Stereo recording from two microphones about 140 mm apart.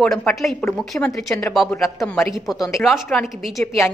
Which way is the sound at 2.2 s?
20° left (ahead or behind).